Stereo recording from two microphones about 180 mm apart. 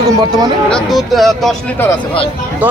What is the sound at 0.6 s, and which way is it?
Speech, centre (ahead or behind).